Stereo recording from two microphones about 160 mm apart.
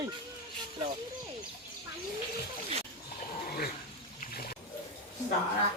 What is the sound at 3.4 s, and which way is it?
Dog, 70° left (ahead or behind).